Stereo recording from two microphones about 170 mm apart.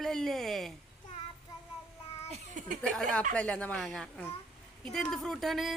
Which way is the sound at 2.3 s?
45° right (ahead or behind).